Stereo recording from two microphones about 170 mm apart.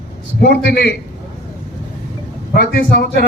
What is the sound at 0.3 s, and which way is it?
Speech, 75° left (ahead or behind).